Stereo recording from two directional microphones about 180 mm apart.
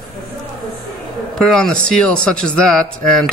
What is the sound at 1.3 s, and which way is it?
Speech, 5° left (ahead or behind).